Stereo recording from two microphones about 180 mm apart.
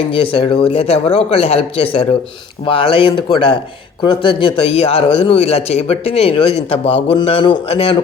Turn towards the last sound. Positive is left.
turn(degrees=30)  # may be behind; listen again after turning